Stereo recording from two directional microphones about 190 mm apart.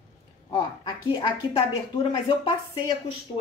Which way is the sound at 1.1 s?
25° left (ahead or behind).